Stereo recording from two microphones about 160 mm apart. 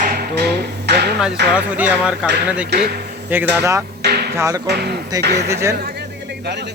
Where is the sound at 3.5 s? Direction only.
15° right (ahead or behind).